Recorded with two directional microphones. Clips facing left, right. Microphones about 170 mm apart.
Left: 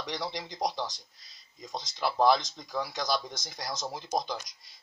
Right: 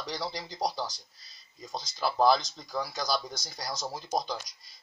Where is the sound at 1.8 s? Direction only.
Centre (ahead or behind).